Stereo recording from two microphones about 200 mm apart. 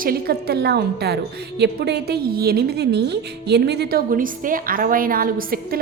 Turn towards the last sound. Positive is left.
turn(degrees=-45)  # may be behind; listen again after turning